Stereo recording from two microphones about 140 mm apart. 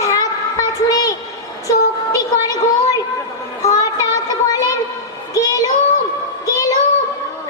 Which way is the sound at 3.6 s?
25° left (ahead or behind).